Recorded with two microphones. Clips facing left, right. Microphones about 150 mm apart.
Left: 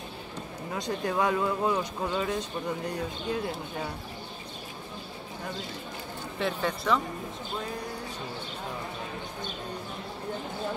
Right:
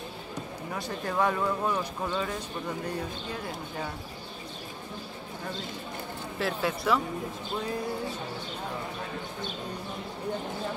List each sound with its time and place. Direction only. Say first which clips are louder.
0.7 s speech: left 1 dB; 20° left (ahead or behind)
6.4 s speech: even; 5° right (ahead or behind)